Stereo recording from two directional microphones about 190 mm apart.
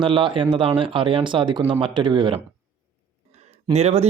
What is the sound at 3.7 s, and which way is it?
Speech, 35° right (ahead or behind).